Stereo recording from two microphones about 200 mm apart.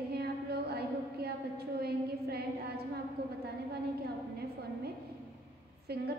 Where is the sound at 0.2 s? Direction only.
50° right (ahead or behind).